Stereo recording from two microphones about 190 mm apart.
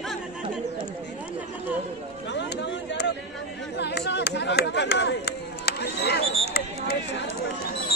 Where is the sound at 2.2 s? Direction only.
65° left (ahead or behind).